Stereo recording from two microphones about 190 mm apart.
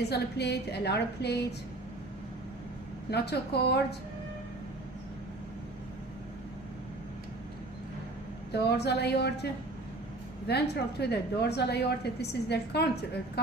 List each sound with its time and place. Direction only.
0.1 s a woman's voice: 60° left (ahead or behind)
3.1 s a woman's voice: 60° left (ahead or behind)
8.5 s a woman's voice: 60° left (ahead or behind)
10.5 s a woman's voice: 60° left (ahead or behind)